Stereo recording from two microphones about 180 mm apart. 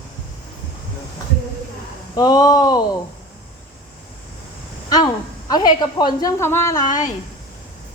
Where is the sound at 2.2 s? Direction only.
20° left (ahead or behind).